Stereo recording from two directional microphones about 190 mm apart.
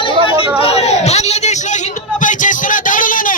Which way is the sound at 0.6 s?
35° left (ahead or behind).